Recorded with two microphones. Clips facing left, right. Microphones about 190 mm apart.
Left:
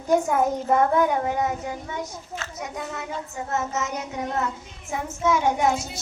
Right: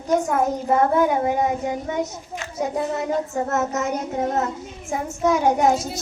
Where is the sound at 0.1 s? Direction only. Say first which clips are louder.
Even; 5° left (ahead or behind).